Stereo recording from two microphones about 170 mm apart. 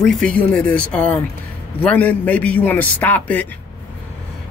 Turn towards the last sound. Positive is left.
turn(degrees=10)  # may be behind; listen again after turning